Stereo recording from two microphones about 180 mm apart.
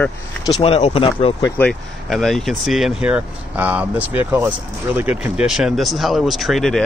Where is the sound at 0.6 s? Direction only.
35° left (ahead or behind).